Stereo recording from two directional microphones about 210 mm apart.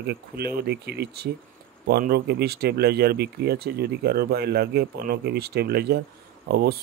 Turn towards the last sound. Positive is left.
turn(degrees=-50)  # may be behind; listen again after turning